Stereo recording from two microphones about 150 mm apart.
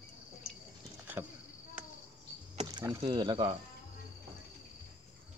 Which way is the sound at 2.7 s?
25° right (ahead or behind).